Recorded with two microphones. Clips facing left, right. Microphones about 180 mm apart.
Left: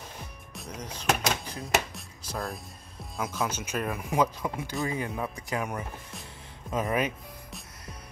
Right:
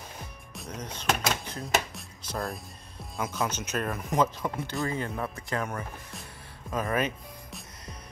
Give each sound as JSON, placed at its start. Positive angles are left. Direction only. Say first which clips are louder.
{"t": 0.6, "sound": "music", "louder": "right 1 dB", "side_deg": 0}
{"t": 1.0, "sound": "speech", "louder": "left 1 dB", "side_deg": 5}
{"t": 4.8, "sound": "speech", "louder": "left 1 dB", "side_deg": 15}